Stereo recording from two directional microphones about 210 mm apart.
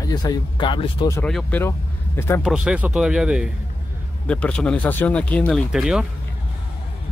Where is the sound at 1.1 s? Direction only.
5° left (ahead or behind).